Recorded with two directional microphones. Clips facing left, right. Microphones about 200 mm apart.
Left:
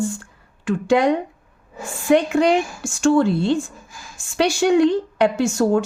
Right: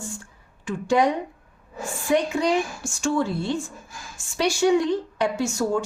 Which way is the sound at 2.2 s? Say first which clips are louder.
Left 6 dB; 60° left (ahead or behind).